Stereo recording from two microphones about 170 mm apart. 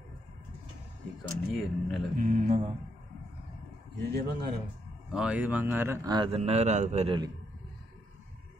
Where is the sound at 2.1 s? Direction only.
50° right (ahead or behind).